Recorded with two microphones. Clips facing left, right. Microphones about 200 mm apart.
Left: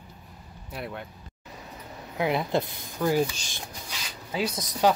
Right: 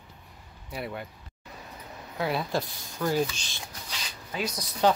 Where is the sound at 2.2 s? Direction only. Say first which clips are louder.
Left 3 dB; 20° left (ahead or behind).